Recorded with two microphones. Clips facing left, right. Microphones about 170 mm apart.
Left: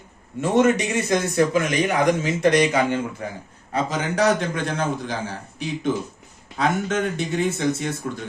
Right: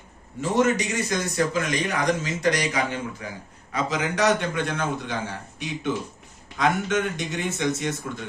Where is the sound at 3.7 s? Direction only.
35° left (ahead or behind).